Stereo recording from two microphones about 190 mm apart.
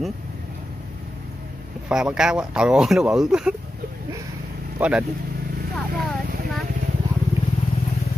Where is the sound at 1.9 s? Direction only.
5° right (ahead or behind).